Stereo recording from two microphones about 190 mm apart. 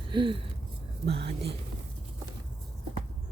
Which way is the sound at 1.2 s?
60° right (ahead or behind).